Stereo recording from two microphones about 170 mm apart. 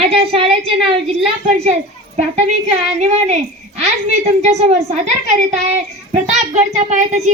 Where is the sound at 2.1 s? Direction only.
40° right (ahead or behind).